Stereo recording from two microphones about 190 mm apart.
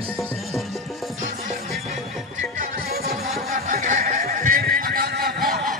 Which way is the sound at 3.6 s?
40° right (ahead or behind).